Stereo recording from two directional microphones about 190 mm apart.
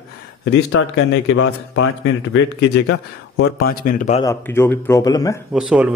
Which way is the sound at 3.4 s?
50° left (ahead or behind).